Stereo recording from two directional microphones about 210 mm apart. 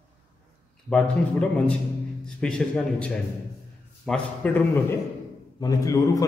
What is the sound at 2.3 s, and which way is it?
A man's voice, 5° left (ahead or behind).